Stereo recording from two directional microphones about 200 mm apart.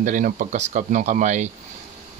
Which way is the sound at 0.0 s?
40° right (ahead or behind).